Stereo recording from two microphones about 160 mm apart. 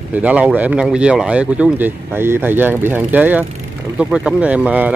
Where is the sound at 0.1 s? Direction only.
10° right (ahead or behind).